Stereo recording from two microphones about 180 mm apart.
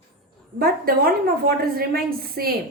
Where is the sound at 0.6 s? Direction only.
55° right (ahead or behind).